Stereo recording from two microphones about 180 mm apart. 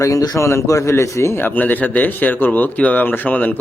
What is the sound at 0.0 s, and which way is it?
A man's voice, 20° left (ahead or behind).